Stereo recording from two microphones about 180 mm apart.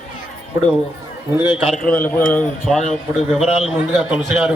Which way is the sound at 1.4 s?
30° left (ahead or behind).